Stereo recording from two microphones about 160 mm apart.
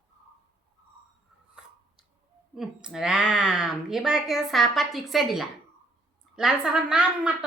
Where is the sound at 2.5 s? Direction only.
5° right (ahead or behind).